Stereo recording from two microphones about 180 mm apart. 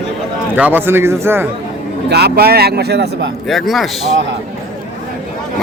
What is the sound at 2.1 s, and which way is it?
Speech, 65° right (ahead or behind).